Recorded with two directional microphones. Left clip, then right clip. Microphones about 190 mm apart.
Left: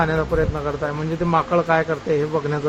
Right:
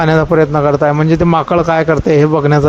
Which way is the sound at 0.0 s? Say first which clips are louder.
Right 9 dB; 50° right (ahead or behind).